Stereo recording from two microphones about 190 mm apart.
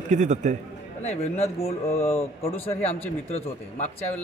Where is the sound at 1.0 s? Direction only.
35° left (ahead or behind).